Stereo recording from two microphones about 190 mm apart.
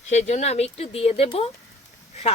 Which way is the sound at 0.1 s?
35° left (ahead or behind).